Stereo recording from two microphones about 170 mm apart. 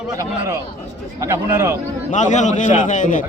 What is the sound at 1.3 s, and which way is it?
Speech, 15° right (ahead or behind).